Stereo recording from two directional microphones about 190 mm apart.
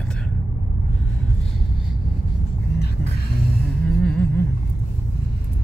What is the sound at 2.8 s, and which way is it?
Music, 55° left (ahead or behind).